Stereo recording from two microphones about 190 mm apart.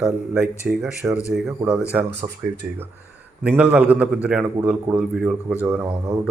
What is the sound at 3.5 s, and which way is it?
Speech, 5° right (ahead or behind).